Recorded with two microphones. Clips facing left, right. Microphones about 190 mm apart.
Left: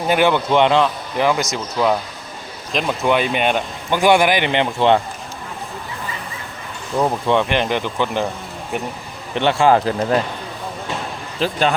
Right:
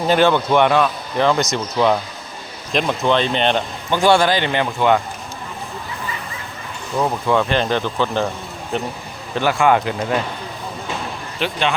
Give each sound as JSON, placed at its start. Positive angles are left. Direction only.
{"t": 0.1, "sound": "speech", "side_deg": 15}
{"t": 1.2, "sound": "speech", "side_deg": 5}
{"t": 7.3, "sound": "speech", "side_deg": 20}
{"t": 9.3, "sound": "speech", "side_deg": 25}
{"t": 11.3, "sound": "speech", "side_deg": 35}